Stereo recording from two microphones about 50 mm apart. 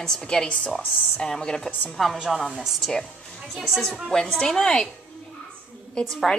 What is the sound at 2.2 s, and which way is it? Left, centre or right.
Speech, centre.